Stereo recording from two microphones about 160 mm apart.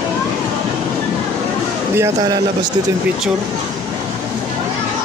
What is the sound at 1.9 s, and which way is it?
Speech, 20° right (ahead or behind).